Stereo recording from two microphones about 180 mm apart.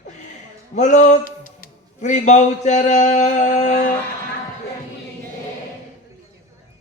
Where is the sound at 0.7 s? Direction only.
40° left (ahead or behind).